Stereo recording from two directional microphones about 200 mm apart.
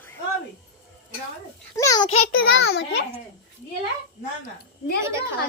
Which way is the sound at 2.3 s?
50° left (ahead or behind).